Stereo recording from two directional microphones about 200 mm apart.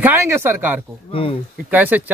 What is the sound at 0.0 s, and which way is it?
Speech, 10° right (ahead or behind).